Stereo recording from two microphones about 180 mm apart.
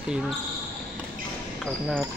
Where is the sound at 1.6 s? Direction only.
Centre (ahead or behind).